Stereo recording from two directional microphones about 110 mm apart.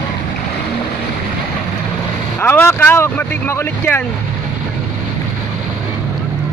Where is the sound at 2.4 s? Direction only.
15° left (ahead or behind).